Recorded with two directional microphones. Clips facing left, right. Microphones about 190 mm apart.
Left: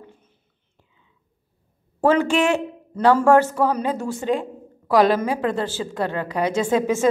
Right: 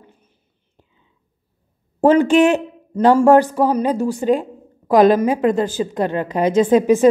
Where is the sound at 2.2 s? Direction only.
20° right (ahead or behind).